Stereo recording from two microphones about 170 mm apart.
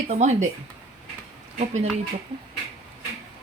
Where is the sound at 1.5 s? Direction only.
45° right (ahead or behind).